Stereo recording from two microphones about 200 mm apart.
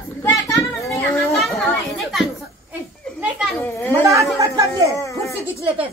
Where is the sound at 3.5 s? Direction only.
10° left (ahead or behind).